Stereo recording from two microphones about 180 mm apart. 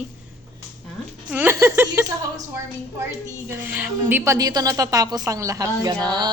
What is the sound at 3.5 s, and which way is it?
A woman's voice, 10° right (ahead or behind).